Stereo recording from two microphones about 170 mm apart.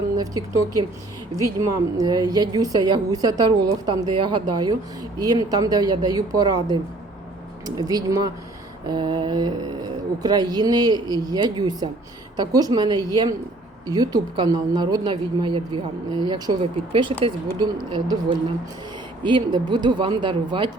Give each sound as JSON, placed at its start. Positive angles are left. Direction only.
{"t": 0.2, "sound": "speech", "side_deg": -20}
{"t": 7.8, "sound": "speech", "side_deg": -20}